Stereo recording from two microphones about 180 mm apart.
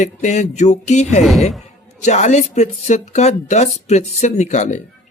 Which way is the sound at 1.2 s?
Centre (ahead or behind).